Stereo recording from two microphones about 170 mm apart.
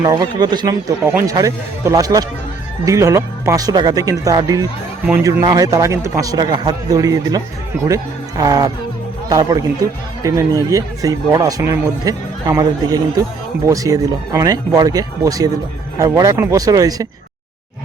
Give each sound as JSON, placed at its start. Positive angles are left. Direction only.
{"t": 0.0, "sound": "speech", "side_deg": -25}